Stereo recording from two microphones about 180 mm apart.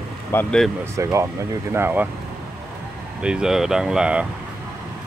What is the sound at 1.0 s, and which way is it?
Speech, 15° right (ahead or behind).